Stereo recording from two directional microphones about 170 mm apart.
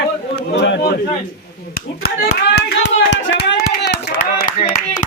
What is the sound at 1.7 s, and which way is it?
Clapping, 70° left (ahead or behind).